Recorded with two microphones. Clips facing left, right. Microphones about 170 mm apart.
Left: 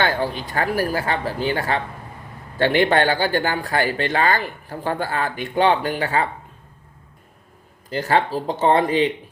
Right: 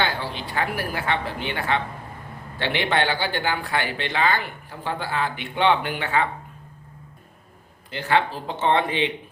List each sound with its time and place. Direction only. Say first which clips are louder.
0.0 s speech: left 5 dB; 45° left (ahead or behind)
7.9 s speech: left 3 dB; 40° left (ahead or behind)